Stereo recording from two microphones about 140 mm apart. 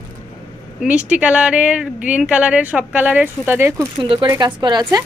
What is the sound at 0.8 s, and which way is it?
Speech, 10° right (ahead or behind).